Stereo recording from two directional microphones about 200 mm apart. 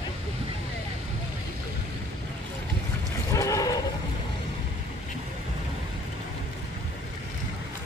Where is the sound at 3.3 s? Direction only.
15° left (ahead or behind).